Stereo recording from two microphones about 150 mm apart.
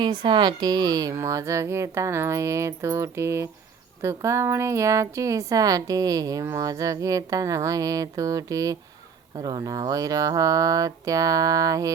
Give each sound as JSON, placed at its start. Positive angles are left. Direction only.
{"t": 0.0, "sound": "speech", "side_deg": -30}